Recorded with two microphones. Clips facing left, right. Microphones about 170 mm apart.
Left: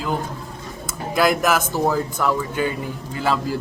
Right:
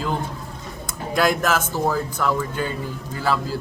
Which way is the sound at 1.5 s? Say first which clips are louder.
Left 2 dB; 15° left (ahead or behind).